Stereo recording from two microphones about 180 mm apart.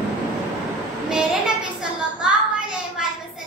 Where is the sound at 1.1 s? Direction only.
5° right (ahead or behind).